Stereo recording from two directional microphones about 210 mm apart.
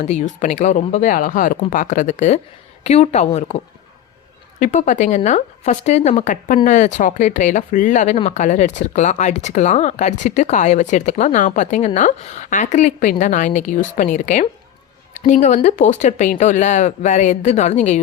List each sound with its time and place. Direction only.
0.0 s speech: 35° left (ahead or behind)
4.6 s speech: 35° left (ahead or behind)